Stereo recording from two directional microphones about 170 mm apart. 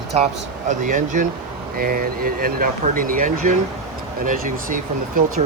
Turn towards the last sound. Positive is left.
turn(degrees=-55)  # may be behind; listen again after turning